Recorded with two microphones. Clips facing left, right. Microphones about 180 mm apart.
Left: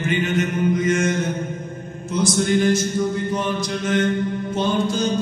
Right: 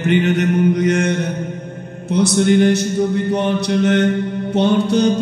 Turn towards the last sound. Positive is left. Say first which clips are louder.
# right 6 dB
turn(degrees=-65)  # may be behind; listen again after turning